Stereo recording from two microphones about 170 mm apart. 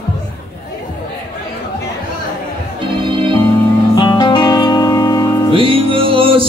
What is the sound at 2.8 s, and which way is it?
Organ, 30° right (ahead or behind).